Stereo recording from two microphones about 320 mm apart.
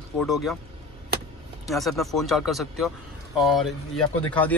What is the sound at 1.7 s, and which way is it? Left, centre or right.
Speech, centre.